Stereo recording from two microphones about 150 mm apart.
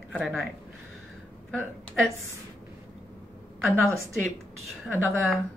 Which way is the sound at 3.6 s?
10° left (ahead or behind).